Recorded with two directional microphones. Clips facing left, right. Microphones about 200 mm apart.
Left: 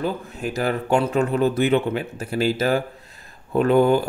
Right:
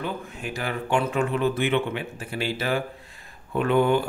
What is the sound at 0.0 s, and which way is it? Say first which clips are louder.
Speech: left 6 dB; 40° left (ahead or behind).